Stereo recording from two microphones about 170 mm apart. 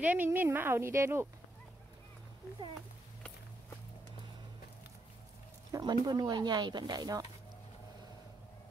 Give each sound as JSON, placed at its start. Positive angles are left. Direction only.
{"t": 0.0, "sound": "speech", "side_deg": -10}
{"t": 5.7, "sound": "speech", "side_deg": -25}